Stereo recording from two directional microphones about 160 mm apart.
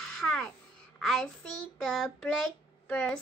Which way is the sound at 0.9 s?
5° left (ahead or behind).